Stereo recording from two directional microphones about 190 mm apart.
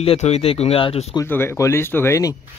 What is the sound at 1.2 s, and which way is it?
Speech, 10° left (ahead or behind).